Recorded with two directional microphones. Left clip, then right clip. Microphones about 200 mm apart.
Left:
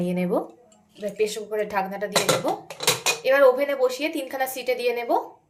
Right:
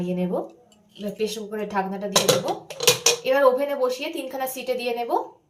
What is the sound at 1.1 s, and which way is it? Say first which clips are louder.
Speech: left 3 dB; 40° left (ahead or behind).